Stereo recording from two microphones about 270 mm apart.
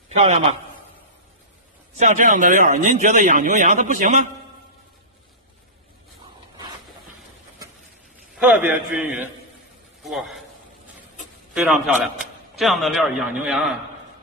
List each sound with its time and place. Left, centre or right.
0.1 s a man's voice: right
2.0 s speech: right
8.4 s a man's voice: centre
11.5 s a man's voice: centre